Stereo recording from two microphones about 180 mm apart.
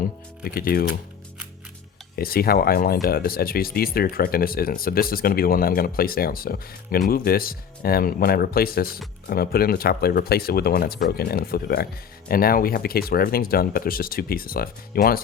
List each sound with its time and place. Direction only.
0.4 s speech: 55° left (ahead or behind)
2.1 s speech: 55° left (ahead or behind)